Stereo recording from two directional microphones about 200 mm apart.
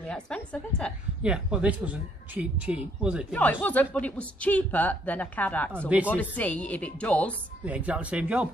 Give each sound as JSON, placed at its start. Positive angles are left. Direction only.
{"t": 0.0, "sound": "speech", "side_deg": 5}
{"t": 1.2, "sound": "speech", "side_deg": -5}
{"t": 3.6, "sound": "a woman's voice", "side_deg": 5}
{"t": 7.6, "sound": "speech", "side_deg": -5}